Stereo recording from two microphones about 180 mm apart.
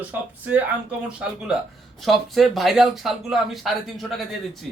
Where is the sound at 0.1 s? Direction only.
10° right (ahead or behind).